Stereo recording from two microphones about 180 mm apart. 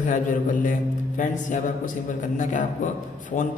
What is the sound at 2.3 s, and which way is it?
Speech, 45° left (ahead or behind).